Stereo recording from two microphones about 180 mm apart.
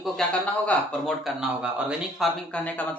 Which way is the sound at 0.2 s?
5° left (ahead or behind).